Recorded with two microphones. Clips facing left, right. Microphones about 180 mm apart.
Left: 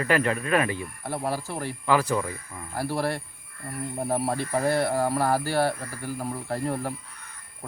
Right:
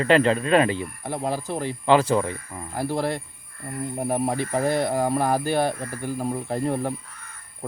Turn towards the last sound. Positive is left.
turn(degrees=-20)  # may be behind; listen again after turning